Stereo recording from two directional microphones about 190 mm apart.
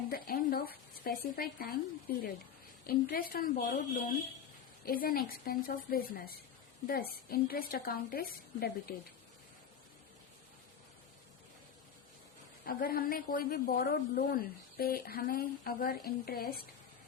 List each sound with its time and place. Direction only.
0.1 s a woman's voice: 55° left (ahead or behind)
12.6 s a woman's voice: 50° left (ahead or behind)